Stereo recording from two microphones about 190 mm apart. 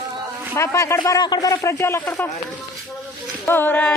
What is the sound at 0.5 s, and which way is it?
Speech, 15° left (ahead or behind).